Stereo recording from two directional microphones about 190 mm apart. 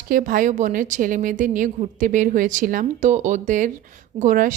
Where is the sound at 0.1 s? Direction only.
45° right (ahead or behind).